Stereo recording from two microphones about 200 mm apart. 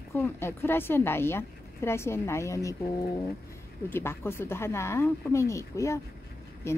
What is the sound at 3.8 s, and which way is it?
Speech, 10° left (ahead or behind).